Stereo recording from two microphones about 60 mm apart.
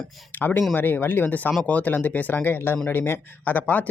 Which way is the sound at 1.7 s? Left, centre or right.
Left.